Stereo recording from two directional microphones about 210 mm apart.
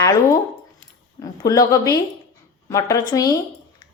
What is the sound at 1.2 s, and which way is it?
A woman's voice, 15° left (ahead or behind).